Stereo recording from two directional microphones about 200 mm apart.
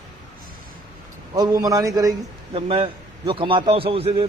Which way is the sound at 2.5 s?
30° right (ahead or behind).